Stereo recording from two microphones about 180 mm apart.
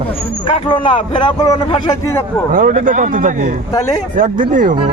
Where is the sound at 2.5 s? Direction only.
45° right (ahead or behind).